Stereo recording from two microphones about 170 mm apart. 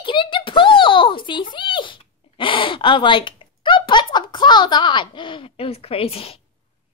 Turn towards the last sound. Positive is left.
turn(degrees=35)  # may be behind; listen again after turning